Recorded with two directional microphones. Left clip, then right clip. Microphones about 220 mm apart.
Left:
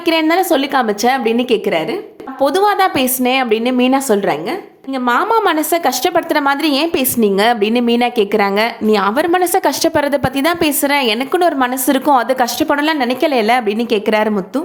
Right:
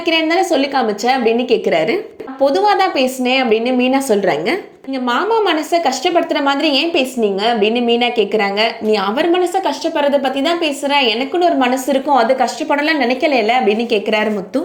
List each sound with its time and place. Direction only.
0.0 s a woman's voice: 20° left (ahead or behind)
9.6 s a woman's voice: 35° left (ahead or behind)